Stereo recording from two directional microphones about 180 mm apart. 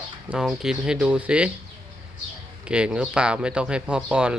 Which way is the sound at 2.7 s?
5° right (ahead or behind).